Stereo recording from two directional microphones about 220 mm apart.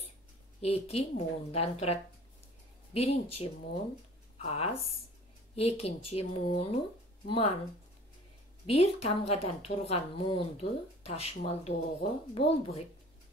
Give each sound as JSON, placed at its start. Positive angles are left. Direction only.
{"t": 0.6, "sound": "speech", "side_deg": 30}
{"t": 8.6, "sound": "speech", "side_deg": 25}